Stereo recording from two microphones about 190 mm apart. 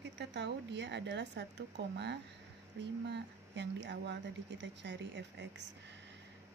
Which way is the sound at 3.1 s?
65° right (ahead or behind).